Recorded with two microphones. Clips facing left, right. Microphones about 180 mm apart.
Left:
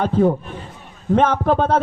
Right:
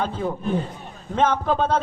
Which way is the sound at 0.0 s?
55° left (ahead or behind).